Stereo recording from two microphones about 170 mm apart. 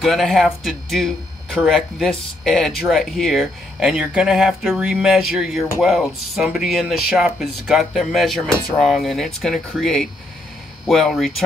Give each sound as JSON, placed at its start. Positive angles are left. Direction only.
{"t": 0.0, "sound": "speech", "side_deg": 0}